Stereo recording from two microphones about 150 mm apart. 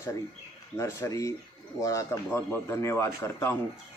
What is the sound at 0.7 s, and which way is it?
A man's voice, 20° left (ahead or behind).